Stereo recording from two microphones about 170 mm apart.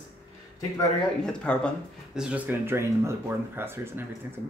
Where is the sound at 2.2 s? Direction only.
10° right (ahead or behind).